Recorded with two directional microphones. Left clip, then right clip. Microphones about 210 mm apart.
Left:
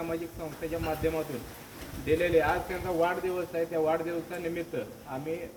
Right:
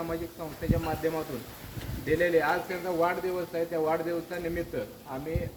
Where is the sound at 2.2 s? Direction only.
15° left (ahead or behind).